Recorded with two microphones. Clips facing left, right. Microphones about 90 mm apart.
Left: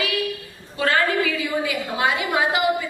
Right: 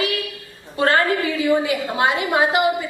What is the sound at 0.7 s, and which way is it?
Speech, 40° right (ahead or behind).